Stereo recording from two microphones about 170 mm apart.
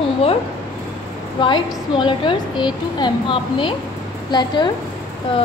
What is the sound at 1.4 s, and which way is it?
A woman's voice, 30° left (ahead or behind).